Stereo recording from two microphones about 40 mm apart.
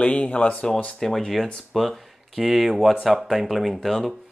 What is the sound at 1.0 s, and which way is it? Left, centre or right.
Speech, centre.